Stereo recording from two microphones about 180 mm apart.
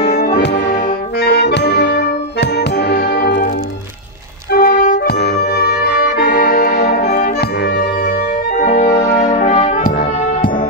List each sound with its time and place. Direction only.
0.1 s music: 65° left (ahead or behind)
4.5 s music: 55° left (ahead or behind)
5.2 s brass instrument: 65° left (ahead or behind)
8.5 s brass instrument: 45° left (ahead or behind)
9.8 s brass instrument: 55° left (ahead or behind)